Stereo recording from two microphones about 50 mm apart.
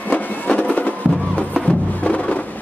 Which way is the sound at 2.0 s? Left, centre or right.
Left.